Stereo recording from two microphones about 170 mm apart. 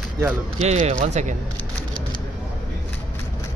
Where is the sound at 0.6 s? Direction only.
40° right (ahead or behind).